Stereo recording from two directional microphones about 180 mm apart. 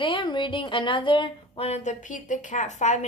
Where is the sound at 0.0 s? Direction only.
25° left (ahead or behind).